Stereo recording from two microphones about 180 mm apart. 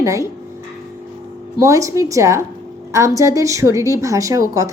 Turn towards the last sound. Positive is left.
turn(degrees=-15)  # may be behind; listen again after turning